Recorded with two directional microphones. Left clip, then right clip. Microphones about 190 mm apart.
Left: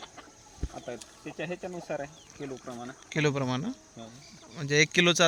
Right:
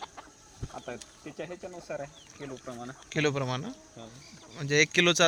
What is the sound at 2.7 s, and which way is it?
Speech, 5° right (ahead or behind).